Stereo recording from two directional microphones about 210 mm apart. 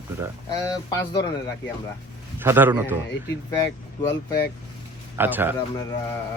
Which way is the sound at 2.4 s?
10° right (ahead or behind).